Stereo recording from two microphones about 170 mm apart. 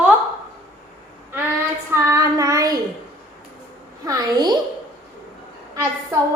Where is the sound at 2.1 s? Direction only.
20° right (ahead or behind).